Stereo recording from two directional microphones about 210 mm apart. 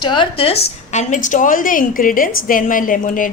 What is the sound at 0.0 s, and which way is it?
A woman's voice, 20° left (ahead or behind).